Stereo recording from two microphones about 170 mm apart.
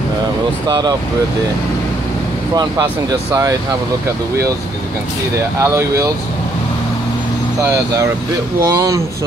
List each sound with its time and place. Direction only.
0.7 s speech: 25° right (ahead or behind)
2.5 s speech: 25° right (ahead or behind)
5.6 s speech: 15° right (ahead or behind)
7.7 s speech: 20° right (ahead or behind)